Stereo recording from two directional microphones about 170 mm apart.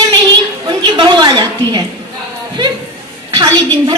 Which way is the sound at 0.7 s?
30° right (ahead or behind).